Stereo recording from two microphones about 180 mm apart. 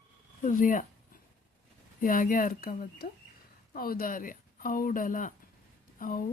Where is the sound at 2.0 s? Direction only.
50° left (ahead or behind).